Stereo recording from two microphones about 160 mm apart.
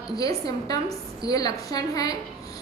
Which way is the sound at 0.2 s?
25° left (ahead or behind).